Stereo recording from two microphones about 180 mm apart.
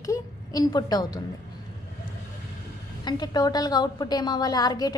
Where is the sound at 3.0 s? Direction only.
20° left (ahead or behind).